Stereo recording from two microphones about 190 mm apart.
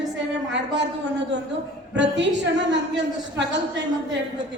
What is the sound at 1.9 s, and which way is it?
Speech, 70° right (ahead or behind).